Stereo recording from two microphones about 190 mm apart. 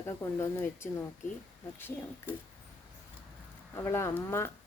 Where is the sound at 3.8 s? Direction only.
15° left (ahead or behind).